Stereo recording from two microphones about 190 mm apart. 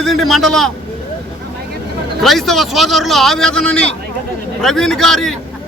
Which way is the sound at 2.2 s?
Centre (ahead or behind).